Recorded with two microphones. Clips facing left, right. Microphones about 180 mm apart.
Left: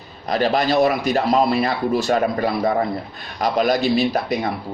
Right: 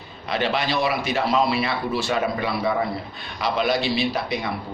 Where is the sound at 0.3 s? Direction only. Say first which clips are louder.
Left 5 dB; 40° left (ahead or behind).